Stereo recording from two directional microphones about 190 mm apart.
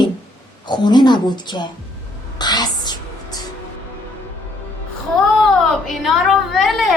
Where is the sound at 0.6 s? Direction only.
20° left (ahead or behind).